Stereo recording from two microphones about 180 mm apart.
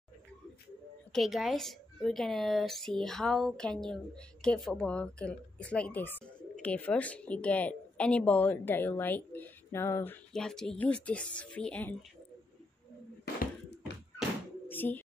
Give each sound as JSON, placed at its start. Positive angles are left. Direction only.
{"t": 1.1, "sound": "a woman's voice", "side_deg": 0}
{"t": 10.3, "sound": "speech", "side_deg": 5}
{"t": 13.2, "sound": "a sound", "side_deg": 65}
{"t": 14.7, "sound": "bird", "side_deg": 10}